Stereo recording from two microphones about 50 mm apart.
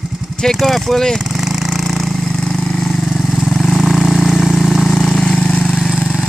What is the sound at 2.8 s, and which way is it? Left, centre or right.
Vehicle, centre.